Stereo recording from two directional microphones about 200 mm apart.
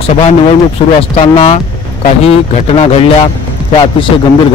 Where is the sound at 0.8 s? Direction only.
30° left (ahead or behind).